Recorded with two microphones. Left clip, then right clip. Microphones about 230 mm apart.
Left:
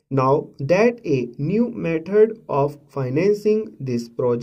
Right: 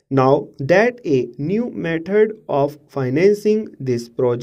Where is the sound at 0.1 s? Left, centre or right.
Right.